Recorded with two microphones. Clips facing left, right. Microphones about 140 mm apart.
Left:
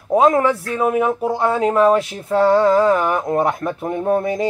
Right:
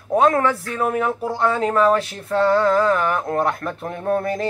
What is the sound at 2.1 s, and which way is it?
Music, 5° left (ahead or behind).